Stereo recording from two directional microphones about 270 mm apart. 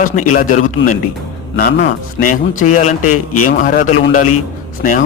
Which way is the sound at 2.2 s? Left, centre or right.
Left.